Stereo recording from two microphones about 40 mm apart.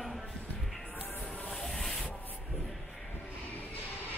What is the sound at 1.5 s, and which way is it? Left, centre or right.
Rub, centre.